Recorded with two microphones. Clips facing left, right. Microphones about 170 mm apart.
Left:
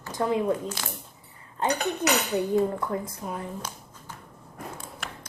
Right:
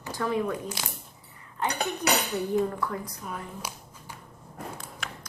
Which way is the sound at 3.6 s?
10° right (ahead or behind).